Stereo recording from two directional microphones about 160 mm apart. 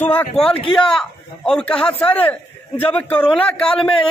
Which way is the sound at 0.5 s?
35° left (ahead or behind).